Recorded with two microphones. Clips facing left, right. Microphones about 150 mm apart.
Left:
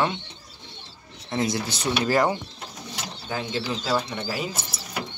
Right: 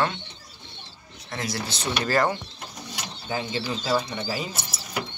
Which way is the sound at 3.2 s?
Centre (ahead or behind).